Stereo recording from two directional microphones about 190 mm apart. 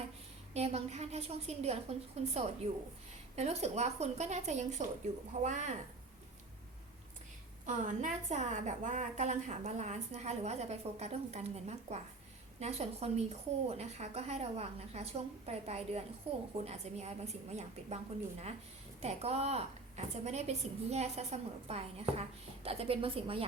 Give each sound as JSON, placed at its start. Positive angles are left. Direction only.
{"t": 0.5, "sound": "a woman's voice", "side_deg": -35}
{"t": 7.6, "sound": "a woman's voice", "side_deg": -40}